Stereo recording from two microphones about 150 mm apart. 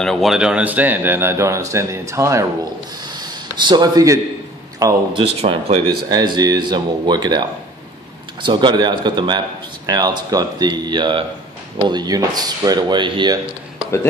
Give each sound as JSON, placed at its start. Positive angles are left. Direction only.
{"t": 0.0, "sound": "a man's voice", "side_deg": 0}
{"t": 5.2, "sound": "speech", "side_deg": -40}
{"t": 6.0, "sound": "a man's voice", "side_deg": -30}